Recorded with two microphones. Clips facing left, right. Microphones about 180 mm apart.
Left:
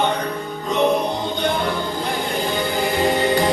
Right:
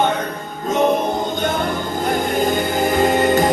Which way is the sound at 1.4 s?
45° right (ahead or behind).